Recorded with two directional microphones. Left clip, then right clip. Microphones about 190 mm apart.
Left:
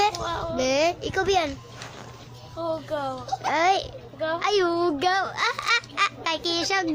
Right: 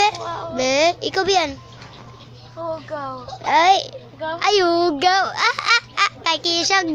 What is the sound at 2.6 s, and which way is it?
Speech, 35° left (ahead or behind).